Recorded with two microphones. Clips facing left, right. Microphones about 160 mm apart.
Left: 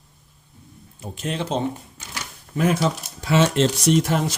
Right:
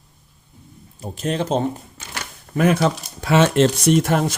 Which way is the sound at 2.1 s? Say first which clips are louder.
Right 4 dB; 60° right (ahead or behind).